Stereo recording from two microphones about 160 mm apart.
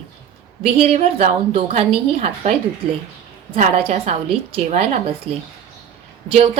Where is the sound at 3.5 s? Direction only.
40° right (ahead or behind).